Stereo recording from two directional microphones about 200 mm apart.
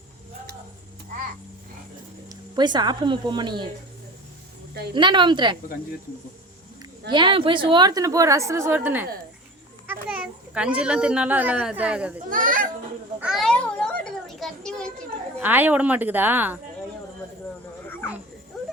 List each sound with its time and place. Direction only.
2.3 s a woman's voice: 20° right (ahead or behind)
4.9 s a woman's voice: 25° right (ahead or behind)
7.1 s a woman's voice: 25° right (ahead or behind); by 12.1 s 5° right (ahead or behind)
12.3 s children playing: 45° right (ahead or behind)
13.1 s a sound: 5° right (ahead or behind)
15.4 s a woman's voice: 10° right (ahead or behind)
18.5 s a sound: centre (ahead or behind)